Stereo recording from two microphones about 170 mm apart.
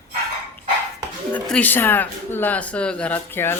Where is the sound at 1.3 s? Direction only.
10° left (ahead or behind).